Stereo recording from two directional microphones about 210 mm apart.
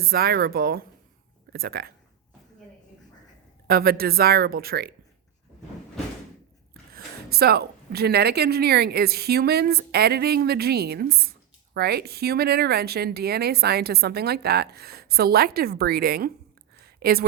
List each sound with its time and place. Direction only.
0.0 s a woman's voice: 45° right (ahead or behind)
3.7 s a woman's voice: 45° right (ahead or behind)
6.9 s a woman's voice: 50° right (ahead or behind)
16.7 s a sound: 45° right (ahead or behind)